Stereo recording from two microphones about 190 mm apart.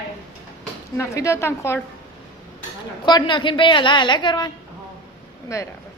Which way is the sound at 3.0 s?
25° left (ahead or behind).